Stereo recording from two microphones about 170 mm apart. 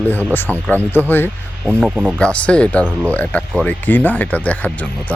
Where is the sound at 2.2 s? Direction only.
5° left (ahead or behind).